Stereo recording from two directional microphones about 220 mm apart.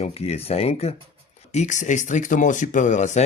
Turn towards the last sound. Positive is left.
turn(degrees=35)  # may be behind; listen again after turning